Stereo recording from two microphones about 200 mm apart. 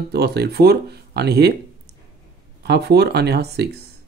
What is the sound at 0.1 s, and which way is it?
Speech, 55° right (ahead or behind).